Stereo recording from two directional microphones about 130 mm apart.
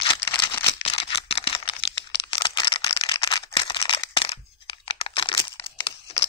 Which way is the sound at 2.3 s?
35° left (ahead or behind).